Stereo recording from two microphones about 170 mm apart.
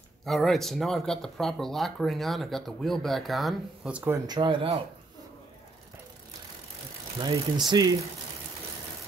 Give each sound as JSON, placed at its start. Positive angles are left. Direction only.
{"t": 0.2, "sound": "speech", "side_deg": 0}
{"t": 4.3, "sound": "speech", "side_deg": -25}
{"t": 7.2, "sound": "speech", "side_deg": -25}